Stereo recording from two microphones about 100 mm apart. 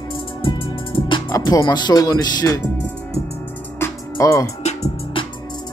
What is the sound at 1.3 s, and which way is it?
Speech, 35° left (ahead or behind).